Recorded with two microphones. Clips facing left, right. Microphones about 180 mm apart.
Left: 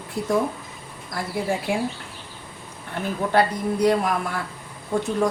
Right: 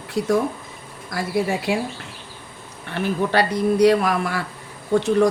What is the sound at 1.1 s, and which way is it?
Speech, 75° right (ahead or behind).